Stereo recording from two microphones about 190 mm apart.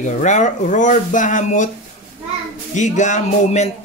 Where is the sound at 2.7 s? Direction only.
40° left (ahead or behind).